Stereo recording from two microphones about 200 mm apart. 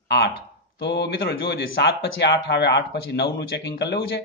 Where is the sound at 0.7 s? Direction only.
60° left (ahead or behind).